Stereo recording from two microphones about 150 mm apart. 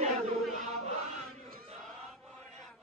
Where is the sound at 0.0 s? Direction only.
45° right (ahead or behind).